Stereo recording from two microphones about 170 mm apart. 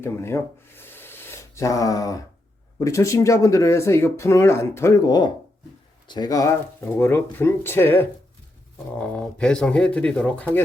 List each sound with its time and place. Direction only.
0.0 s speech: 15° left (ahead or behind)